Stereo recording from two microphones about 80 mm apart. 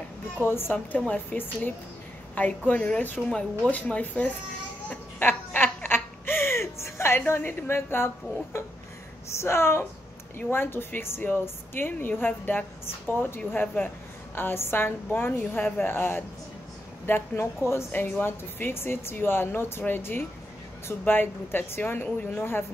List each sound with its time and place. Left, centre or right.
0.5 s a woman's voice: left
3.3 s speech: centre
4.8 s snicker: left
7.2 s a woman's voice: left
9.4 s a woman's voice: left